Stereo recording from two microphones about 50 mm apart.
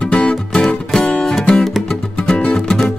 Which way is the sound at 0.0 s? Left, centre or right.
Left.